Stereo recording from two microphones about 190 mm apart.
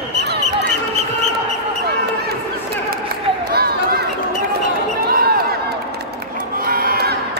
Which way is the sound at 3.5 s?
55° right (ahead or behind).